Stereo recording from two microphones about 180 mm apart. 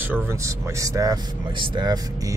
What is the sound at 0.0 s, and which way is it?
Speech, 10° right (ahead or behind).